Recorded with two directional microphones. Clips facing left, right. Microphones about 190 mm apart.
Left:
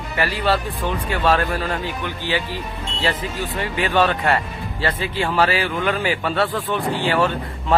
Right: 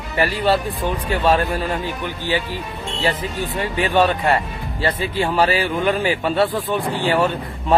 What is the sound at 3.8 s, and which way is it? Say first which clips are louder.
Speech: right 2 dB; 15° right (ahead or behind).